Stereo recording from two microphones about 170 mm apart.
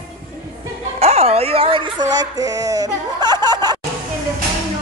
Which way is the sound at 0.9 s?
40° right (ahead or behind).